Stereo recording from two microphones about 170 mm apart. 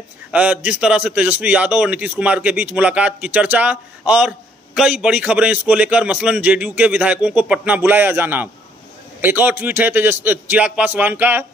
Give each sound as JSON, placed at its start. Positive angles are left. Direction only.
{"t": 0.3, "sound": "a man's voice", "side_deg": -10}